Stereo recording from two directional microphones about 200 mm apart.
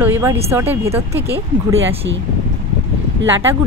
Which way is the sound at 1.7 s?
70° right (ahead or behind).